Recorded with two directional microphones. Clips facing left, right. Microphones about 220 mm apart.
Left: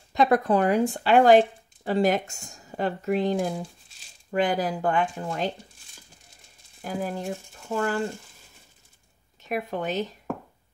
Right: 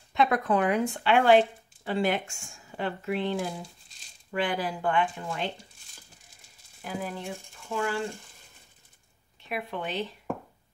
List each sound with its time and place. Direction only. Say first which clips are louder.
0.1 s speech: left 4 dB; 35° left (ahead or behind)
6.8 s speech: left 4 dB; 40° left (ahead or behind)
9.4 s speech: left 5 dB; 45° left (ahead or behind)